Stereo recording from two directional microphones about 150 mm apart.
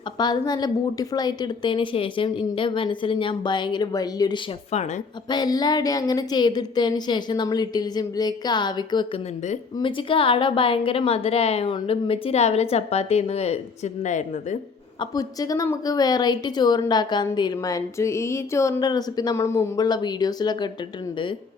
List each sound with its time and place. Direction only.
0.2 s a woman's voice: 30° left (ahead or behind); by 14.6 s 55° left (ahead or behind)
15.1 s a woman's voice: 25° left (ahead or behind)